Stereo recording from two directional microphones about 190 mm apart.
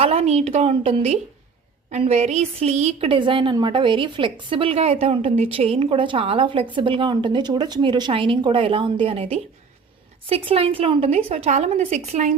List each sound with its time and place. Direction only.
0.0 s a woman's voice: 30° right (ahead or behind)